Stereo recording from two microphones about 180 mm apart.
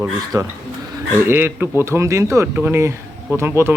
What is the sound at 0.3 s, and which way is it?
A man's voice, 15° right (ahead or behind).